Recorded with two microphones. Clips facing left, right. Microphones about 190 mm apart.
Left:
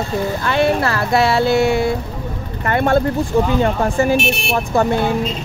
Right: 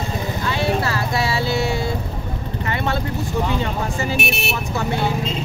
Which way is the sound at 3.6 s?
55° left (ahead or behind).